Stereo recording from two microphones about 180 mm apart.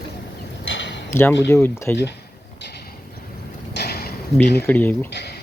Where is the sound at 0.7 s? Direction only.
80° left.